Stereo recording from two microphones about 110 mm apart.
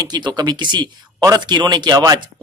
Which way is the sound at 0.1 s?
40° right (ahead or behind).